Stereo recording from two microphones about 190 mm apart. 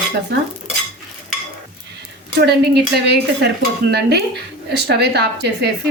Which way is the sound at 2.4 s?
60° right (ahead or behind).